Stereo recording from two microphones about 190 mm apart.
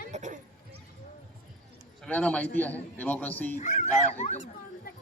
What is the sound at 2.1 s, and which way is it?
A man's voice, 5° left (ahead or behind).